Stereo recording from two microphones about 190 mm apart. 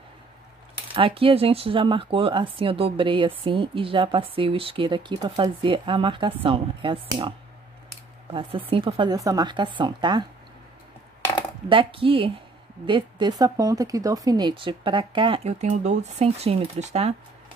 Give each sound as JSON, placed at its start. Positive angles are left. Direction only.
{"t": 0.9, "sound": "speech", "side_deg": -30}
{"t": 11.7, "sound": "speech", "side_deg": -25}